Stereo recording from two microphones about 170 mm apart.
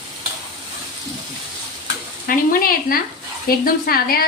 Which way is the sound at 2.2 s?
55° left (ahead or behind).